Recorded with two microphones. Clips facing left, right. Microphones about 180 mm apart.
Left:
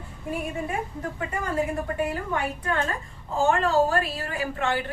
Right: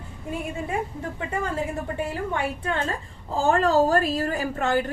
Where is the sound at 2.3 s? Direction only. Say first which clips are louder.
Even; 25° right (ahead or behind).